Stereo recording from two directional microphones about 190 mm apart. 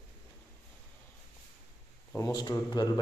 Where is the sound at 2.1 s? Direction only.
20° left (ahead or behind).